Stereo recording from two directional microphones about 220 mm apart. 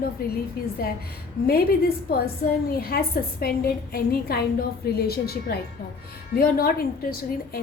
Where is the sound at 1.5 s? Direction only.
45° left (ahead or behind).